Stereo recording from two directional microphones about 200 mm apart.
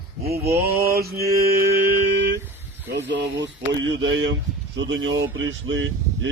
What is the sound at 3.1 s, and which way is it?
Speech, 60° right (ahead or behind).